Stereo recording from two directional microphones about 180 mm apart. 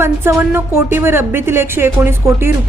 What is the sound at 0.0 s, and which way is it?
Speech, 15° right (ahead or behind).